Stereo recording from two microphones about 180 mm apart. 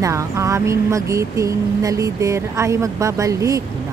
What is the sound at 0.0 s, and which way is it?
Speech, 15° right (ahead or behind).